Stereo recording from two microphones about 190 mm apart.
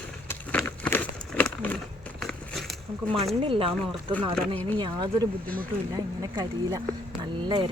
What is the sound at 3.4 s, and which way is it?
Speech, 30° right (ahead or behind).